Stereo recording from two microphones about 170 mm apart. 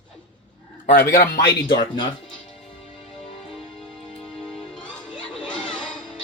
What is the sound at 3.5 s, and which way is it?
Music, centre (ahead or behind).